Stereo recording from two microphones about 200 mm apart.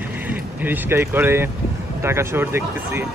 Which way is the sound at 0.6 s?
10° right (ahead or behind).